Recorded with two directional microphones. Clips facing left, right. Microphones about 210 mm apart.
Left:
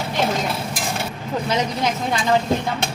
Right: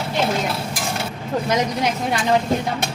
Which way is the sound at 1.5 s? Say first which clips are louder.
Right 1 dB; 10° right (ahead or behind).